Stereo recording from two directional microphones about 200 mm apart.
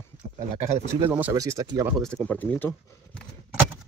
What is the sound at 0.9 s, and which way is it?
Speech, 10° right (ahead or behind).